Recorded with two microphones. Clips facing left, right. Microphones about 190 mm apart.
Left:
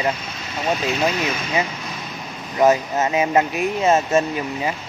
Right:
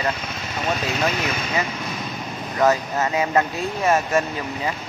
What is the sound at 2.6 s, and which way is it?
Speech, 20° left (ahead or behind).